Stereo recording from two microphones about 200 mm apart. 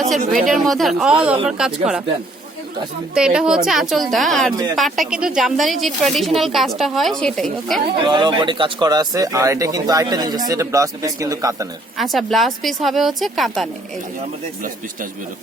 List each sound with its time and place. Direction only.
0.4 s speech: centre (ahead or behind)
3.2 s speech: 5° right (ahead or behind)
4.5 s speech: 20° right (ahead or behind)
4.8 s speech: centre (ahead or behind)
7.9 s speech: 25° right (ahead or behind)
11.9 s speech: centre (ahead or behind)